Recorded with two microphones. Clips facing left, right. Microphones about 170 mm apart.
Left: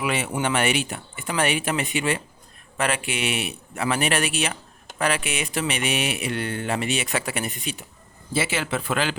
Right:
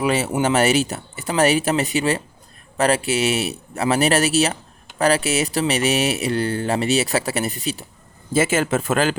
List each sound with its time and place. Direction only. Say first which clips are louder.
0.0 s speech: right 6 dB; 35° right (ahead or behind)
8.3 s speech: right 7 dB; 45° right (ahead or behind)